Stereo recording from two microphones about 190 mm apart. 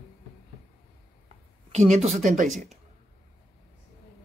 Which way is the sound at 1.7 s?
35° right (ahead or behind).